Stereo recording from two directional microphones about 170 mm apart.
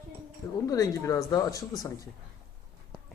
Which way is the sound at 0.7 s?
20° left (ahead or behind).